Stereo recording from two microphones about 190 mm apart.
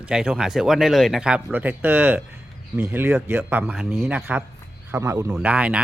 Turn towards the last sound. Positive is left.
turn(degrees=-5)  # may be behind; listen again after turning